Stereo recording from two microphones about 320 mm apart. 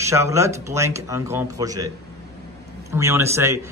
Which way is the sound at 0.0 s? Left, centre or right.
Centre.